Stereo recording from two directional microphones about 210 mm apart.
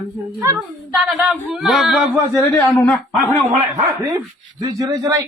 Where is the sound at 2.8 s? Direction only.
5° left (ahead or behind).